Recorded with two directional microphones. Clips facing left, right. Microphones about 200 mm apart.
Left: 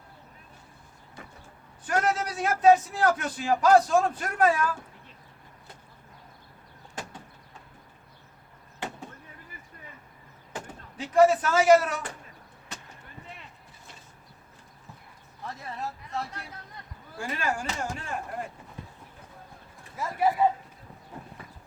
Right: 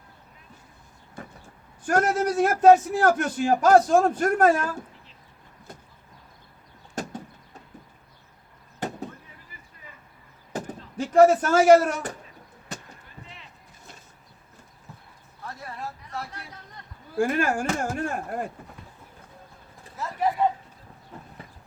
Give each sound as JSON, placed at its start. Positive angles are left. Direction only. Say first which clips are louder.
{"t": 1.9, "sound": "a man's voice", "louder": "right 5 dB", "side_deg": -45}
{"t": 6.9, "sound": "door", "louder": "right 7 dB", "side_deg": -40}
{"t": 10.5, "sound": "speech", "louder": "right 7 dB", "side_deg": -40}
{"t": 17.2, "sound": "a man's voice", "louder": "right 8 dB", "side_deg": -50}
{"t": 20.0, "sound": "speech", "louder": "even", "side_deg": 10}